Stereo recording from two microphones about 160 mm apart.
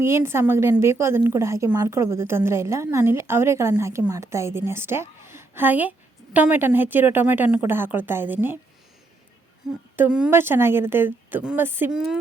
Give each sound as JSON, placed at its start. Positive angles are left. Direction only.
{"t": 0.0, "sound": "a woman's voice", "side_deg": -15}
{"t": 9.9, "sound": "a woman's voice", "side_deg": -10}
{"t": 11.9, "sound": "speech", "side_deg": 0}